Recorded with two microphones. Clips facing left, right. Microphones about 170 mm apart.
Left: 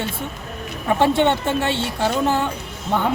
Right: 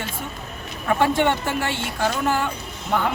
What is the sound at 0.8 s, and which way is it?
Speech, 25° left (ahead or behind).